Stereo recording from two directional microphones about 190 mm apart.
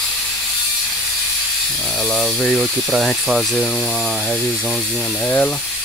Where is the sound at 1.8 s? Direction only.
5° left (ahead or behind).